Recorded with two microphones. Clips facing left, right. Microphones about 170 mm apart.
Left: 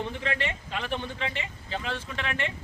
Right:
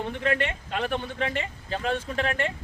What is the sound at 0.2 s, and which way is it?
Speech, 50° right (ahead or behind).